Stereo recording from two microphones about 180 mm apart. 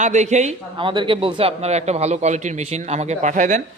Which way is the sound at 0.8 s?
25° right (ahead or behind).